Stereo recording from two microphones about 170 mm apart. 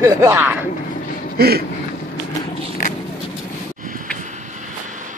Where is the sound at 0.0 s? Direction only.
20° right (ahead or behind).